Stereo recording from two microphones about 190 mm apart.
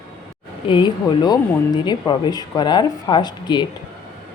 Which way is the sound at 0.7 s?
25° left (ahead or behind).